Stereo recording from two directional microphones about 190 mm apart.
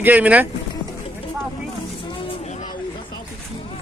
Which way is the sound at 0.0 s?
10° right (ahead or behind).